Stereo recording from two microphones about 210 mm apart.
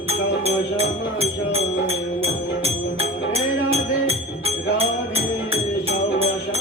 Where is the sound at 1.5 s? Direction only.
30° right (ahead or behind).